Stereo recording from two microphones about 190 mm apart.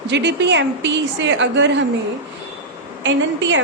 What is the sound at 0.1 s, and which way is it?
A woman's voice, 65° right (ahead or behind).